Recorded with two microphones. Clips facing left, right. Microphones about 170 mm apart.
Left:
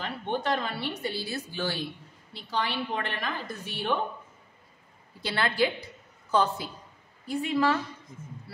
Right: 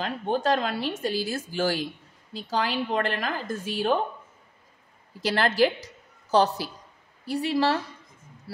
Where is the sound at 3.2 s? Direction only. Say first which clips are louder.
Right 4 dB; 45° right (ahead or behind).